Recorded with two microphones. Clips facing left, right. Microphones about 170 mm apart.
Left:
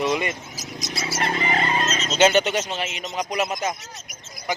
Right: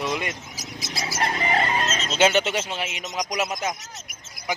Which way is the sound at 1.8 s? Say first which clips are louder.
Left 2 dB; 40° left (ahead or behind).